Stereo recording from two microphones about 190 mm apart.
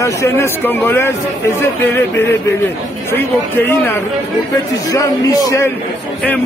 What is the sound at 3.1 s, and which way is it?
A man's voice, 10° left (ahead or behind).